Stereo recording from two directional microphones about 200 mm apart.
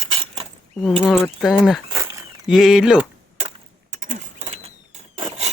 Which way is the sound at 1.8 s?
20° right (ahead or behind).